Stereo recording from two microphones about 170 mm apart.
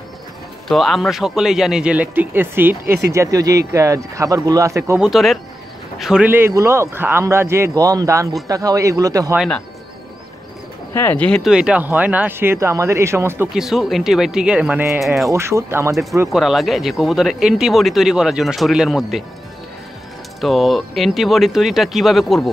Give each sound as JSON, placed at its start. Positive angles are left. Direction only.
{"t": 0.7, "sound": "speech", "side_deg": 0}
{"t": 5.0, "sound": "speech", "side_deg": 0}
{"t": 10.9, "sound": "speech", "side_deg": 15}
{"t": 13.6, "sound": "speech", "side_deg": 0}
{"t": 16.3, "sound": "speech", "side_deg": 0}
{"t": 20.3, "sound": "speech", "side_deg": 0}